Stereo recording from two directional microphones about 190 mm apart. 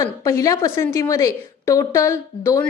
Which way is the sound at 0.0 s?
15° left (ahead or behind).